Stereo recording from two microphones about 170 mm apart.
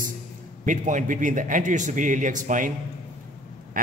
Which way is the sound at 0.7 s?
50° right (ahead or behind).